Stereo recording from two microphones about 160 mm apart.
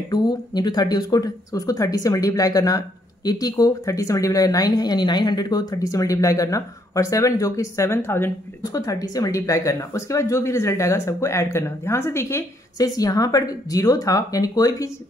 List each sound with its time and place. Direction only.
0.1 s speech: 25° left (ahead or behind)